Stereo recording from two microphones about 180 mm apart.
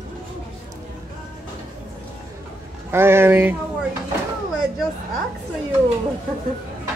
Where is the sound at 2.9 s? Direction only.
15° right (ahead or behind).